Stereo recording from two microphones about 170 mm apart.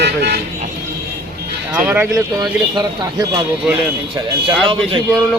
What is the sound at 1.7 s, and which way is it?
Speech, 10° right (ahead or behind).